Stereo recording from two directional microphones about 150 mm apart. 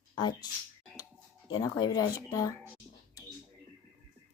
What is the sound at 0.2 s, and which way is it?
Speech, 30° left (ahead or behind).